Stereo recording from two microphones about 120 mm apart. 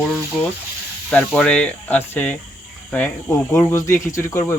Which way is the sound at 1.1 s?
10° left (ahead or behind).